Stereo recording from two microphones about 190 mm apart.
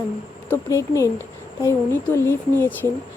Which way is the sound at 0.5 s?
15° left (ahead or behind).